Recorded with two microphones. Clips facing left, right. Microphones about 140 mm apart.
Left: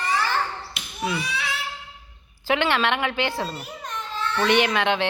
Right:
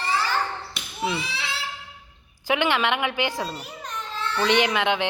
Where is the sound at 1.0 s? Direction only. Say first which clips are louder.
Left 1 dB; 25° right (ahead or behind).